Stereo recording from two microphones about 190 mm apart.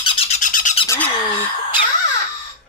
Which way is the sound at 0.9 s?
10° left (ahead or behind).